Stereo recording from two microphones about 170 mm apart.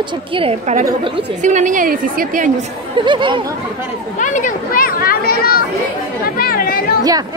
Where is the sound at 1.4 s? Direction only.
45° right (ahead or behind).